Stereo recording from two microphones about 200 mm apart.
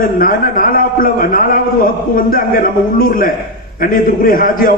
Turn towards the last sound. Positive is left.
turn(degrees=45)  # may be behind; listen again after turning